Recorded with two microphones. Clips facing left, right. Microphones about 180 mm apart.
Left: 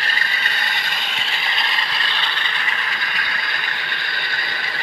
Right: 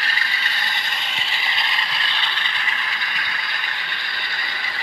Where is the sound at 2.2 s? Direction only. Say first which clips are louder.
Left 2 dB; 55° left (ahead or behind).